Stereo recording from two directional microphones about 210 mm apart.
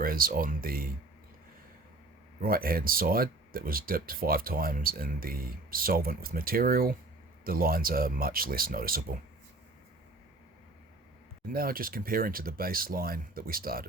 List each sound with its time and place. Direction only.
0.0 s speech: 45° right (ahead or behind)
2.4 s speech: 45° right (ahead or behind)
11.4 s speech: 45° right (ahead or behind)